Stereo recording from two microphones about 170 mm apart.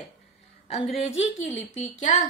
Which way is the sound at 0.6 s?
35° left (ahead or behind).